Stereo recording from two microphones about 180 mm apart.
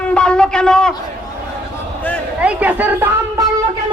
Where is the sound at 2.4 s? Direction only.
5° right (ahead or behind).